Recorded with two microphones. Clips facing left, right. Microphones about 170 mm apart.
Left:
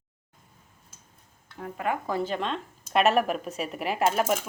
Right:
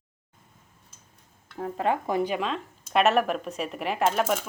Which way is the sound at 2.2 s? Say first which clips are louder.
Right 3 dB; 15° right (ahead or behind).